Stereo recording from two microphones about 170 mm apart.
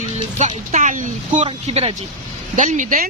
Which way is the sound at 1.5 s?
35° right (ahead or behind).